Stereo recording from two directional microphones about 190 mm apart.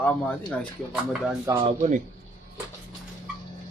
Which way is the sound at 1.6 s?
35° right (ahead or behind).